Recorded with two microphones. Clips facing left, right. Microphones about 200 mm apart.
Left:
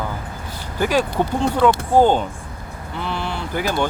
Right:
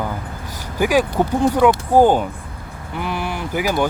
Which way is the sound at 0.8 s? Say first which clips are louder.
Right 2 dB; 10° right (ahead or behind).